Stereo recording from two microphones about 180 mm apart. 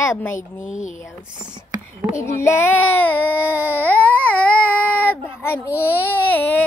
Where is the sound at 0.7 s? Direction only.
40° left (ahead or behind).